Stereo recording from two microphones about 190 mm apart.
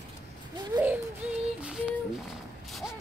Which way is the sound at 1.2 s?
5° right (ahead or behind).